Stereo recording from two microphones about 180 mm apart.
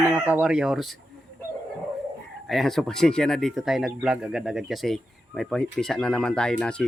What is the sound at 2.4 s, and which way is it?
Speech, centre (ahead or behind).